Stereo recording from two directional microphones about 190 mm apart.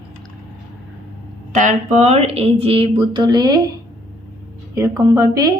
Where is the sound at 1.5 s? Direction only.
40° right (ahead or behind); by 3.6 s 20° right (ahead or behind).